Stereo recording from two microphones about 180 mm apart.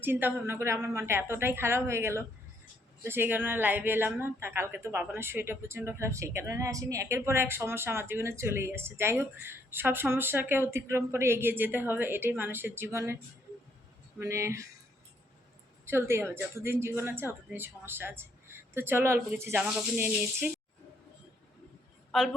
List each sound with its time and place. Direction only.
0.0 s speech: 10° right (ahead or behind)
14.2 s speech: 15° right (ahead or behind)
15.9 s speech: 15° right (ahead or behind)